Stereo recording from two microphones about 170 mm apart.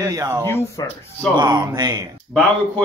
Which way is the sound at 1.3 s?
25° right (ahead or behind).